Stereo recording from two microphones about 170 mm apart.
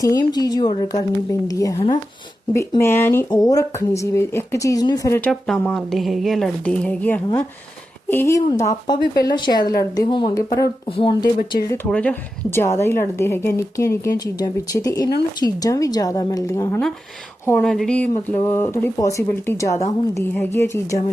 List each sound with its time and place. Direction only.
0.0 s a woman's voice: 20° left (ahead or behind)
5.2 s a woman's voice: 5° left (ahead or behind)
9.2 s a woman's voice: 25° left (ahead or behind)
10.8 s speech: 30° left (ahead or behind)
11.5 s a woman's voice: 15° left (ahead or behind)
17.6 s a woman's voice: centre (ahead or behind)